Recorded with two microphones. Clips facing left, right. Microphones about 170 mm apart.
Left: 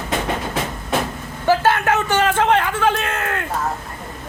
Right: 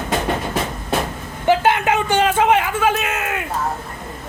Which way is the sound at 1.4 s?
15° right (ahead or behind).